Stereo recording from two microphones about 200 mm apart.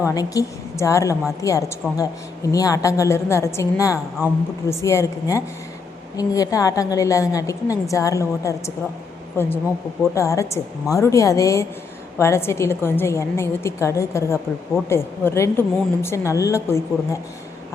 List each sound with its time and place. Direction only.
0.0 s a woman's voice: 15° left (ahead or behind)
10.0 s a woman's voice: 15° left (ahead or behind)